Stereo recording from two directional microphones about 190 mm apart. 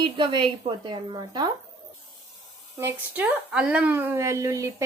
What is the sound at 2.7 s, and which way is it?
A woman's voice, 10° right (ahead or behind).